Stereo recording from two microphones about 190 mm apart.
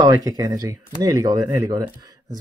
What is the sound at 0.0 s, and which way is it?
Speech, 20° right (ahead or behind).